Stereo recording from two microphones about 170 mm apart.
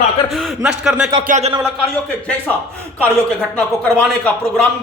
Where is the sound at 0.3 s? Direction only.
Centre (ahead or behind).